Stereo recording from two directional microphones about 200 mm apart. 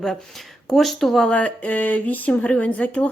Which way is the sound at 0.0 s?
Centre (ahead or behind).